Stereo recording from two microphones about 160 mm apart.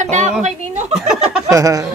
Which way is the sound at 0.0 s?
50° right (ahead or behind).